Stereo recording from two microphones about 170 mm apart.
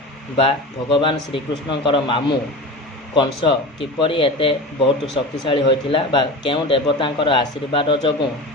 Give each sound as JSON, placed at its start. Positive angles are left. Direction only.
{"t": 0.3, "sound": "a man's voice", "side_deg": 30}